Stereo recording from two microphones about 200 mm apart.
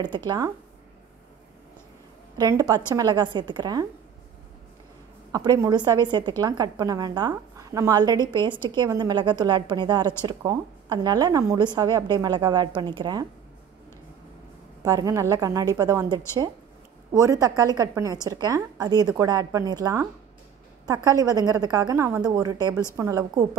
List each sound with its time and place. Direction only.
2.3 s a woman's voice: 15° right (ahead or behind)
5.3 s a woman's voice: 20° right (ahead or behind)
14.8 s a woman's voice: 20° right (ahead or behind)